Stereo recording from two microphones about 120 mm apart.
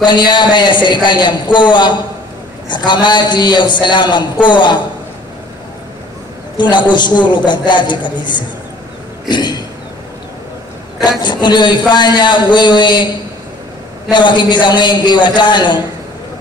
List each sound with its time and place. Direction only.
0.0 s a man's voice: 35° left (ahead or behind)
6.5 s a man's voice: 40° left (ahead or behind)
11.1 s a man's voice: 40° left (ahead or behind)
14.1 s a man's voice: 40° left (ahead or behind)